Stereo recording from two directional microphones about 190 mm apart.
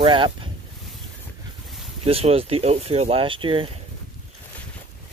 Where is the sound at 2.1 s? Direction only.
30° right (ahead or behind).